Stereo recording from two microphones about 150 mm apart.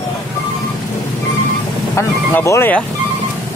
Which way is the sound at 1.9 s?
20° left (ahead or behind).